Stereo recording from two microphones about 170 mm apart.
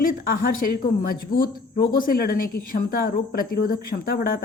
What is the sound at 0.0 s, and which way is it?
Speech, 60° left (ahead or behind).